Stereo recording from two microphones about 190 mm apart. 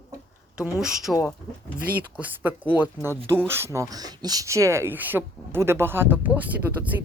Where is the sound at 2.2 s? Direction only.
10° right (ahead or behind).